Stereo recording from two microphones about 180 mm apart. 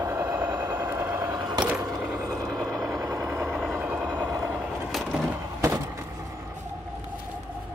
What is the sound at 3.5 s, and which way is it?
Vehicle, centre (ahead or behind).